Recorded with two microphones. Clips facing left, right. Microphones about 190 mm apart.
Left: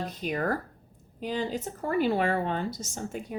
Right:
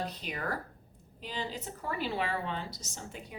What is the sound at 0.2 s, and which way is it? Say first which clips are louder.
Speech: left 8 dB; 45° left (ahead or behind).